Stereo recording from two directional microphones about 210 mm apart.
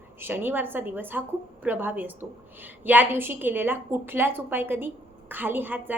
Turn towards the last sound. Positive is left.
turn(degrees=-10)  # may be behind; listen again after turning